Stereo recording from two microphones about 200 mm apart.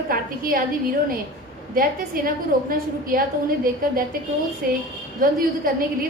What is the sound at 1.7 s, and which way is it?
A woman's voice, 45° right (ahead or behind).